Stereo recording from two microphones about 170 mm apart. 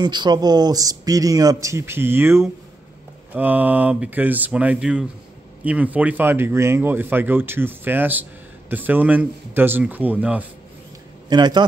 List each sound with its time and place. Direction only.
0.0 s a man's voice: 25° right (ahead or behind); by 10.4 s 10° right (ahead or behind)
11.2 s speech: 25° right (ahead or behind)